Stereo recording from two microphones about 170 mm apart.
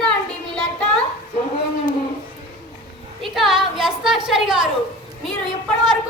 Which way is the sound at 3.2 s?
Centre (ahead or behind).